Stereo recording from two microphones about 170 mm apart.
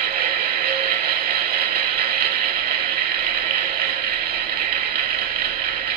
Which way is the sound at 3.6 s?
60° right (ahead or behind).